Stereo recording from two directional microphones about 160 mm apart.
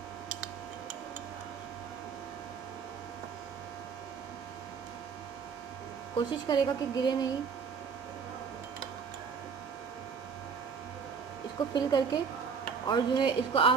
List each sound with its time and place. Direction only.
6.1 s speech: 25° left (ahead or behind)
11.7 s speech: 25° left (ahead or behind)